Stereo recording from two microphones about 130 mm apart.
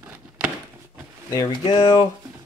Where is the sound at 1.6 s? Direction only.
45° left (ahead or behind).